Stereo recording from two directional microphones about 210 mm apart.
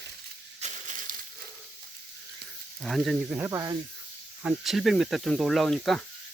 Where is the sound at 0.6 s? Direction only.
35° right (ahead or behind).